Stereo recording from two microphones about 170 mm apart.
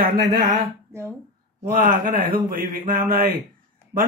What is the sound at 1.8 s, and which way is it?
Speech, 55° right (ahead or behind).